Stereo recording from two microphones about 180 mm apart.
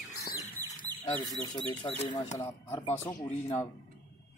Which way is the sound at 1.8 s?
30° left (ahead or behind).